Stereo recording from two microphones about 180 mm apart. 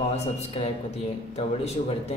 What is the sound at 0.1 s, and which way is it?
Speech, 35° left (ahead or behind).